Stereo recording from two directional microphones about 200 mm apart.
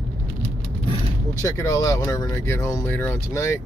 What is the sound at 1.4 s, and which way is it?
Speech, 15° left (ahead or behind).